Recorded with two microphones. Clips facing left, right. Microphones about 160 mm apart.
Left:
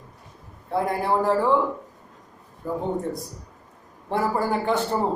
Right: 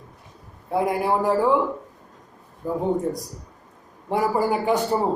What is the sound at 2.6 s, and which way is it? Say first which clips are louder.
Speech: right 2 dB; 15° right (ahead or behind).